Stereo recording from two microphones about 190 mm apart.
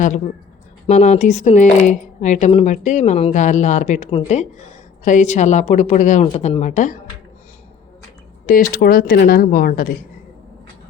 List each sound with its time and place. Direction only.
0.9 s speech: 35° left (ahead or behind)
8.4 s speech: 45° left (ahead or behind)